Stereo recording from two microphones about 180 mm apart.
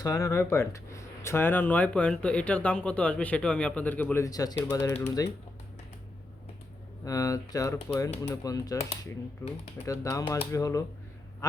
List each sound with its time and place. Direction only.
0.0 s speech: 20° left (ahead or behind)
7.0 s speech: 20° left (ahead or behind)
9.8 s speech: 15° left (ahead or behind)